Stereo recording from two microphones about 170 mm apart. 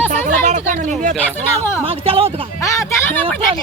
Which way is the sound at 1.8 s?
35° right (ahead or behind).